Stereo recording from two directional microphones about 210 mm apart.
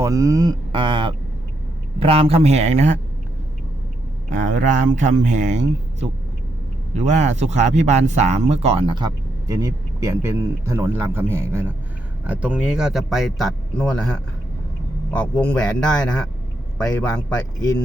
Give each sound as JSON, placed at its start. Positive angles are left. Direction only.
{"t": 0.0, "sound": "a man's voice", "side_deg": -15}
{"t": 4.3, "sound": "a man's voice", "side_deg": -35}
{"t": 15.1, "sound": "speech", "side_deg": 5}